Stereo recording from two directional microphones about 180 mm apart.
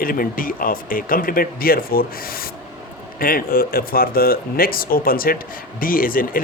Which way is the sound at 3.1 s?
55° left (ahead or behind).